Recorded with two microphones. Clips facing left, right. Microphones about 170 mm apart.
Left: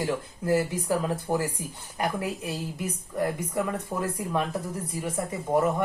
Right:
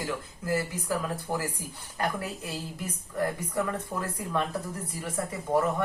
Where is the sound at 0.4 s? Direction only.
25° left (ahead or behind).